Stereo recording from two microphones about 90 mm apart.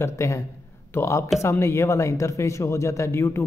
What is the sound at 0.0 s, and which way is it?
A man's voice, 30° left (ahead or behind).